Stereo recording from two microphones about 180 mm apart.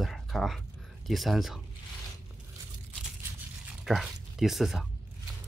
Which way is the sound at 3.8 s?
Centre (ahead or behind).